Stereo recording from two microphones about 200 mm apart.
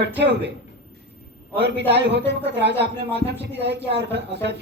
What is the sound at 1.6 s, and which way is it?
Speech, 55° right (ahead or behind).